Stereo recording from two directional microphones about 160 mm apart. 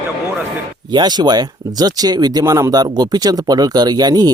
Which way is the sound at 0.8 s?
25° right (ahead or behind).